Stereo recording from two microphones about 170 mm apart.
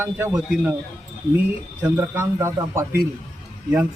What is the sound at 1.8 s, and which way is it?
A man's voice, 10° right (ahead or behind).